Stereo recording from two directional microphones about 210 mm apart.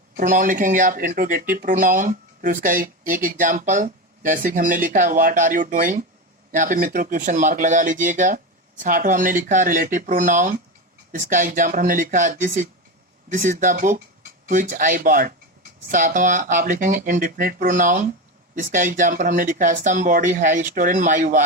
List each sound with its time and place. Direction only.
0.2 s speech: 40° right (ahead or behind)